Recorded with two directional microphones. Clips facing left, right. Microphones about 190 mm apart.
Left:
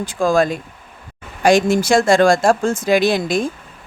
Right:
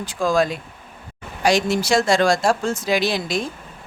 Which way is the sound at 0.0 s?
50° left (ahead or behind).